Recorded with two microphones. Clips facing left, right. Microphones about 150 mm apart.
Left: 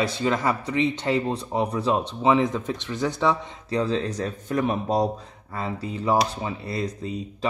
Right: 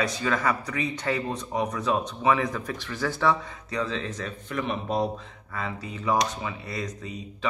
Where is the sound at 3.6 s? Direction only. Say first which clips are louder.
Left 6 dB; 35° left (ahead or behind).